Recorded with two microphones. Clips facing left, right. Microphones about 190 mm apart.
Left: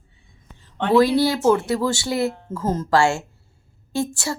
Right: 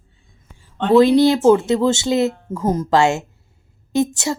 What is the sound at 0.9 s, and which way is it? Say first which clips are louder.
A woman's voice: right 5 dB; 20° right (ahead or behind).